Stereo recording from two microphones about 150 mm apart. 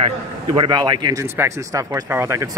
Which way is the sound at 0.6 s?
30° right (ahead or behind).